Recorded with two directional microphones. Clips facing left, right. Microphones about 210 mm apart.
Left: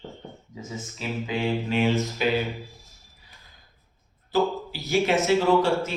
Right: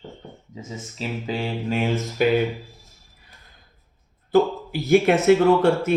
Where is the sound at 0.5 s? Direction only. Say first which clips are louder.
Right 1 dB; 30° right (ahead or behind).